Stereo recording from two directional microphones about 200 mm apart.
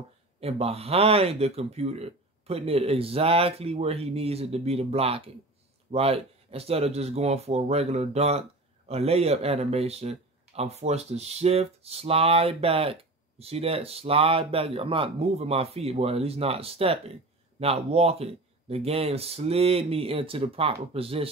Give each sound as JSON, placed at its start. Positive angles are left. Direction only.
{"t": 0.4, "sound": "speech", "side_deg": -30}